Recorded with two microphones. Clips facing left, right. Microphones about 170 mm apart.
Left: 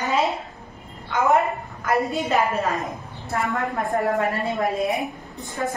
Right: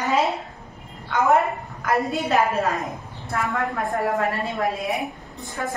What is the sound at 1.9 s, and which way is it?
Speech, centre (ahead or behind).